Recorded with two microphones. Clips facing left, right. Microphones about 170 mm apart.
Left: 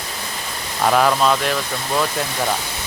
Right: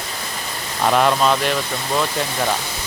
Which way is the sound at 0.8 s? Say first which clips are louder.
Even; centre (ahead or behind).